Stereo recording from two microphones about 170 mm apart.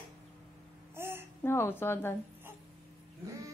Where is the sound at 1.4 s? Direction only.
15° left (ahead or behind).